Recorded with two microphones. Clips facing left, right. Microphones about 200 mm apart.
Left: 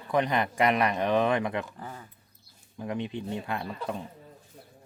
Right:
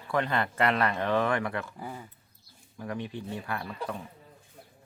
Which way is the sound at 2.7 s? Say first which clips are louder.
Left 3 dB; 20° left (ahead or behind).